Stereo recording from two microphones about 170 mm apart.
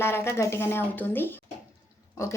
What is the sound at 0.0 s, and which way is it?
Speech, 15° left (ahead or behind).